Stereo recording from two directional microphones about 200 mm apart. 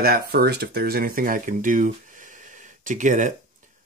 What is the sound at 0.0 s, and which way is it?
Speech, 50° right (ahead or behind).